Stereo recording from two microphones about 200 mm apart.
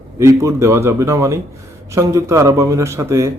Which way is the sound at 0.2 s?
15° right (ahead or behind).